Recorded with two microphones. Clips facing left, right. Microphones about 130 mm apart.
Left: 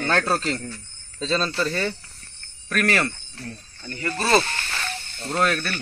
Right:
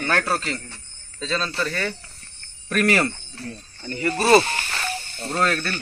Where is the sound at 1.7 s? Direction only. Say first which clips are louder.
Left 2 dB; 25° left (ahead or behind).